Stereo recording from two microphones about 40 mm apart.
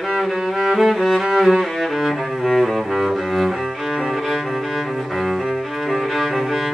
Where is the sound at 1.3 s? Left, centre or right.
Centre.